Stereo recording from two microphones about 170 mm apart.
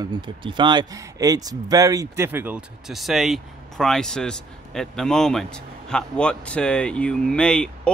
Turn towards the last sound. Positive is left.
turn(degrees=5)  # may be behind; listen again after turning